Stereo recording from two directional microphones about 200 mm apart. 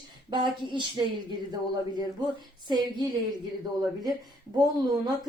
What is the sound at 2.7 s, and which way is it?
Speech, 20° right (ahead or behind).